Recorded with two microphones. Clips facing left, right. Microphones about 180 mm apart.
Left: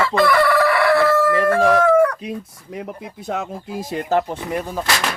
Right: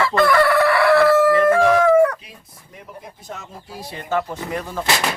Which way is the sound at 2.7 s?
80° left.